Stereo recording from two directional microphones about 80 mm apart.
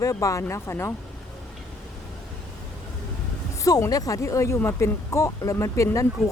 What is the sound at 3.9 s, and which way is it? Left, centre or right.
Speech, left.